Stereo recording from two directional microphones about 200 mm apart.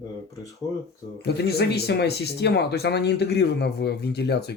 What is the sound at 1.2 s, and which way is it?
Speech, 55° left (ahead or behind).